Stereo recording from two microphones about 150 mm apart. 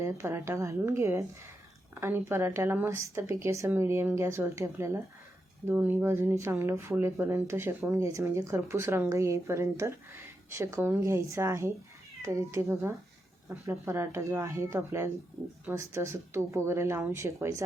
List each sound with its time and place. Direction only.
0.0 s speech: 20° right (ahead or behind)